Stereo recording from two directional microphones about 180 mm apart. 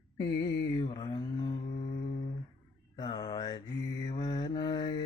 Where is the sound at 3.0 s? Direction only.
30° left (ahead or behind).